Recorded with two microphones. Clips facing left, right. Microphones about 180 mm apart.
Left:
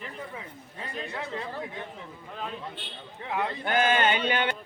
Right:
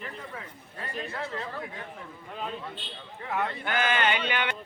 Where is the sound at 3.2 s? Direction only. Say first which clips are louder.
Even; 15° left (ahead or behind).